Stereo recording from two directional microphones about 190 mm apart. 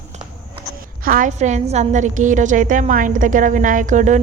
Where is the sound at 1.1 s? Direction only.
45° right (ahead or behind).